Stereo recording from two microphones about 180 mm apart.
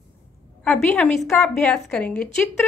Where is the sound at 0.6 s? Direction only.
5° left (ahead or behind).